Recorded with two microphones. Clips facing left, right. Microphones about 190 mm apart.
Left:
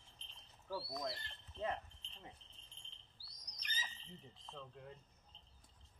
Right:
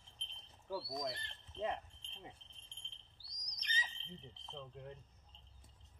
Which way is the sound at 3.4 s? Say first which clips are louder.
Right 4 dB; 5° left (ahead or behind).